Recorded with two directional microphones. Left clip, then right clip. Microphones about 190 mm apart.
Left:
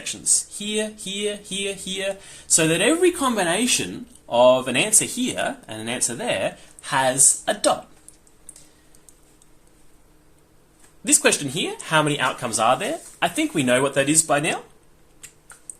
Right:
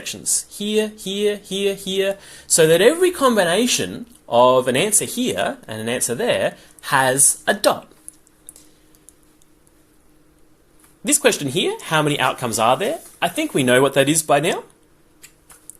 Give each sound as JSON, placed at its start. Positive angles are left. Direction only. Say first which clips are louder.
{"t": 0.0, "sound": "speech", "louder": "left 1 dB", "side_deg": -25}
{"t": 11.0, "sound": "speech", "louder": "right 2 dB", "side_deg": -25}
{"t": 13.1, "sound": "speech", "louder": "even", "side_deg": -5}
{"t": 13.5, "sound": "speech", "louder": "right 8 dB", "side_deg": -30}